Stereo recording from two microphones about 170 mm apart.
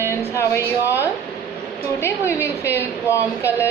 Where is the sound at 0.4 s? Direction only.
15° left (ahead or behind).